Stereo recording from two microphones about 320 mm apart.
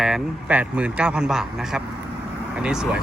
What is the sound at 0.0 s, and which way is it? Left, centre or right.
Speech, centre.